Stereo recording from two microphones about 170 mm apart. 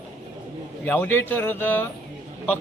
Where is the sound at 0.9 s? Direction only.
10° left (ahead or behind).